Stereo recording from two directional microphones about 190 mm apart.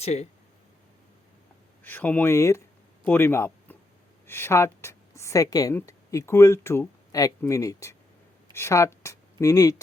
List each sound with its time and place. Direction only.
0.0 s speech: 35° left (ahead or behind)
1.8 s a woman's voice: 10° left (ahead or behind)